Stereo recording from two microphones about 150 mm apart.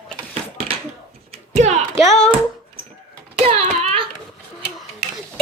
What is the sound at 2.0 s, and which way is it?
Hands, 5° left (ahead or behind).